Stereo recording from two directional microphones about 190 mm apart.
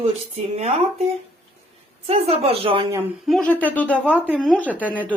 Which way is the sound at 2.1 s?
30° right (ahead or behind).